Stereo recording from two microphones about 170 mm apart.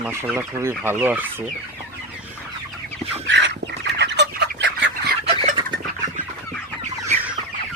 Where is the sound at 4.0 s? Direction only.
90° right.